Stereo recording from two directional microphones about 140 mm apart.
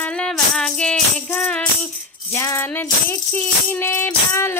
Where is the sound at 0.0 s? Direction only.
5° left (ahead or behind).